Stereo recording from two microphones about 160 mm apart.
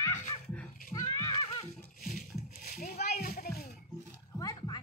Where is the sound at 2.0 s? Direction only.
55° left (ahead or behind).